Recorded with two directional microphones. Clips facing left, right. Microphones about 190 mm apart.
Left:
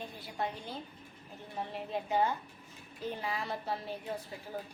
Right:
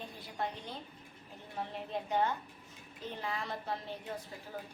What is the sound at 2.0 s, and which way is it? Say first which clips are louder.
A woman's voice: left 2 dB; 5° left (ahead or behind).